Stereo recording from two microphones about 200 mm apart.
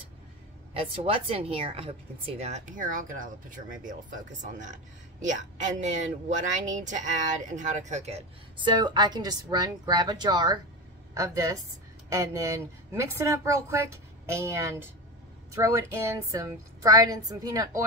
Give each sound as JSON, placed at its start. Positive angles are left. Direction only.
{"t": 0.7, "sound": "a woman's voice", "side_deg": -30}